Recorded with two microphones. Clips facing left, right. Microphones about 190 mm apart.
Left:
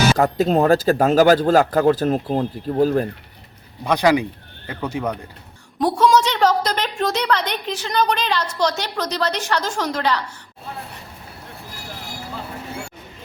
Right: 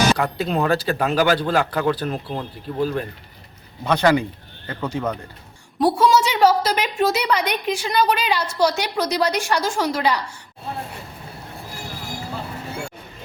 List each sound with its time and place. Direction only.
0.2 s speech: 40° left (ahead or behind)
3.8 s speech: 10° left (ahead or behind)
5.8 s a woman's voice: 5° right (ahead or behind)